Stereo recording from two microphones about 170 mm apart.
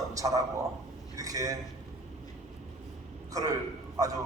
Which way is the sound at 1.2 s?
20° right (ahead or behind).